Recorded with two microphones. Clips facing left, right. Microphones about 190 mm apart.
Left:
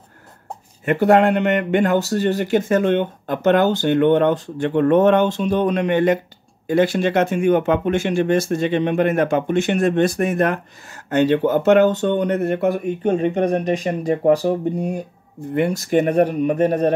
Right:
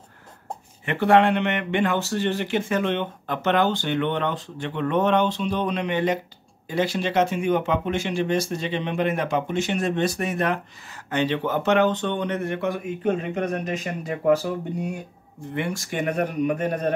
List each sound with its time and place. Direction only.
0.8 s speech: 45° left (ahead or behind)